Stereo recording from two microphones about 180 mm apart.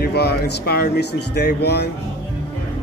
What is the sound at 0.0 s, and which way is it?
Speech, 65° left (ahead or behind).